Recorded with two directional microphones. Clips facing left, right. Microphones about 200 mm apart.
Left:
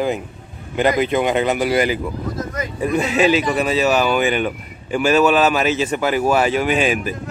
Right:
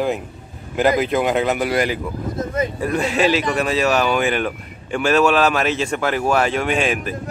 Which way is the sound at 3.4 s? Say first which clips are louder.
Left 1 dB; 5° left (ahead or behind).